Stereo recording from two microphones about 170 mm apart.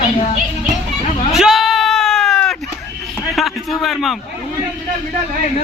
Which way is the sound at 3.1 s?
Centre (ahead or behind).